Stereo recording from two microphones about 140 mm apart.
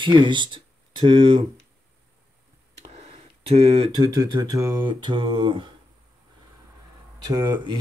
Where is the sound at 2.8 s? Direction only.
50° right (ahead or behind).